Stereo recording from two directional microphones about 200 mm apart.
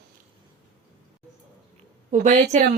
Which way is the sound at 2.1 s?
35° right (ahead or behind).